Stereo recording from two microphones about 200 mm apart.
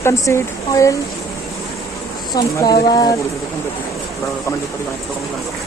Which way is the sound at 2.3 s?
20° left (ahead or behind).